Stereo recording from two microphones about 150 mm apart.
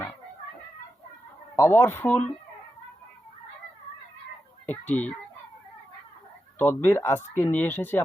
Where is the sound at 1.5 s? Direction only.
15° left (ahead or behind).